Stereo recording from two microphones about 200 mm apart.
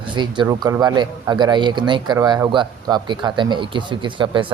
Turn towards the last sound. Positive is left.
turn(degrees=-25)  # may be behind; listen again after turning